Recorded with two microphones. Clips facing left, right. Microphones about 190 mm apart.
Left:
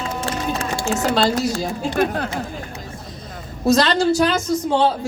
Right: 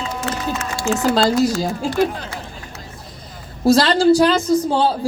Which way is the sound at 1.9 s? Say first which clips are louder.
Left 1 dB; 60° left (ahead or behind).